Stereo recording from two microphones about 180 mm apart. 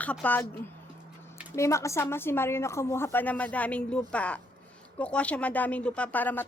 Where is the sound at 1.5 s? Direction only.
15° left (ahead or behind).